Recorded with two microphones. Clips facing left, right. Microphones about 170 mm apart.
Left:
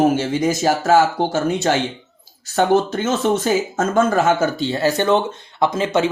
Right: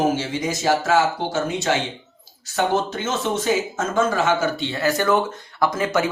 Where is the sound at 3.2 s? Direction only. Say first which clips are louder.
Left 2 dB; 55° left (ahead or behind); by 6.0 s 25° left (ahead or behind).